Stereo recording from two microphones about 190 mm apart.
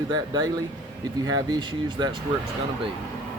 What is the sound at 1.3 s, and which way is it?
Speech, 20° right (ahead or behind).